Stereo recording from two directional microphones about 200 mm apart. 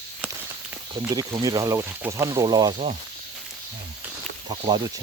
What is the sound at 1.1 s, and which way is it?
Speech, 20° right (ahead or behind).